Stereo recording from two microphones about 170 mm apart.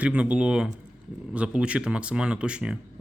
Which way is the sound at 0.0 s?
5° right (ahead or behind).